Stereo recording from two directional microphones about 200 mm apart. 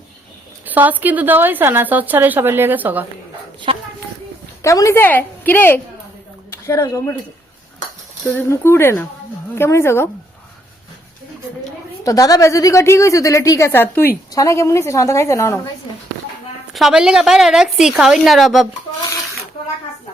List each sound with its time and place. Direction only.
0.6 s a woman's voice: 10° right (ahead or behind)
3.7 s a sound: 25° right (ahead or behind)
4.6 s a woman's voice: 15° left (ahead or behind)
8.3 s a woman's voice: 10° left (ahead or behind)
12.0 s a woman's voice: 20° left (ahead or behind)
16.7 s a woman's voice: centre (ahead or behind)